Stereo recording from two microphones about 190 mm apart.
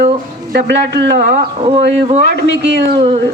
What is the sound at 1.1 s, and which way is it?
Speech, 40° right (ahead or behind).